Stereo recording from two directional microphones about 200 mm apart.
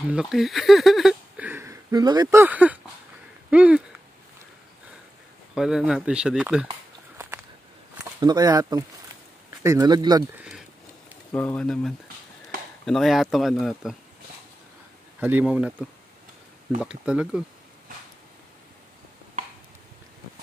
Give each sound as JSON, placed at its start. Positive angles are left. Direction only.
{"t": 0.1, "sound": "speech", "side_deg": 0}
{"t": 2.4, "sound": "speech", "side_deg": -10}
{"t": 5.5, "sound": "speech", "side_deg": -5}
{"t": 7.9, "sound": "speech", "side_deg": -20}
{"t": 11.3, "sound": "speech", "side_deg": 5}
{"t": 15.1, "sound": "speech", "side_deg": -5}